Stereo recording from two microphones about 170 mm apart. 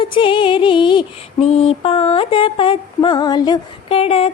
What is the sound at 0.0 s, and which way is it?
Music, 30° left (ahead or behind).